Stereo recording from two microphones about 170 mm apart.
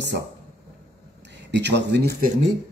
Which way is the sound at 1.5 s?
85° right.